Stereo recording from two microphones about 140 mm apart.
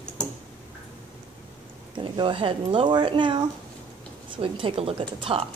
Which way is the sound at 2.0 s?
35° right (ahead or behind).